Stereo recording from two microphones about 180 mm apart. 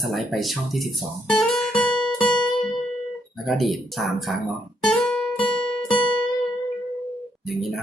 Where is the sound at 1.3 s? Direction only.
5° left (ahead or behind).